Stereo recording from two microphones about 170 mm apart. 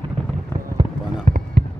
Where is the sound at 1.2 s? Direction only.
60° right (ahead or behind).